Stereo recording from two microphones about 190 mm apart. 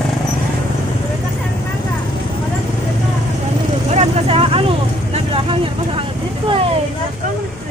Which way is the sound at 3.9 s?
35° right (ahead or behind).